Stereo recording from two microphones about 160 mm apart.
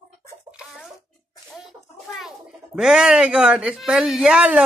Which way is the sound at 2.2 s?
5° right (ahead or behind).